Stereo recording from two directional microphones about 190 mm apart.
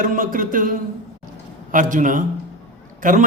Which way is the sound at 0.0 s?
45° right (ahead or behind).